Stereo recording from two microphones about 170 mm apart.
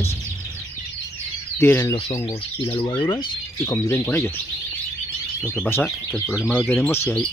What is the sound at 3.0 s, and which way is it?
Speech, 25° left (ahead or behind).